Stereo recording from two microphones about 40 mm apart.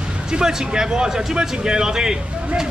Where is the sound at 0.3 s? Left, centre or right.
Centre.